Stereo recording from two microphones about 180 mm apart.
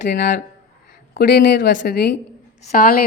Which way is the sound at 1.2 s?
55° left (ahead or behind).